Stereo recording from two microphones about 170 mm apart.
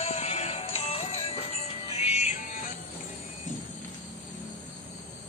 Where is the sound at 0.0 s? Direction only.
40° left (ahead or behind).